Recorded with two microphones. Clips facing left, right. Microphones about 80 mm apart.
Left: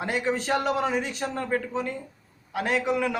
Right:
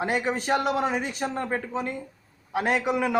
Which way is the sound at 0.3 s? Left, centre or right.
Centre.